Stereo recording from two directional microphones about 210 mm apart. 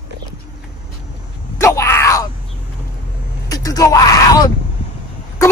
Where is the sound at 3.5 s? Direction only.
15° left (ahead or behind).